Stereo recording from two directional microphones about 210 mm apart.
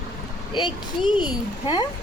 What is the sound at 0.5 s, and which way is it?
Speech, 20° left (ahead or behind).